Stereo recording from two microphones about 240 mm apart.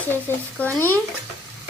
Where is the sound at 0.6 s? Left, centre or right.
Centre.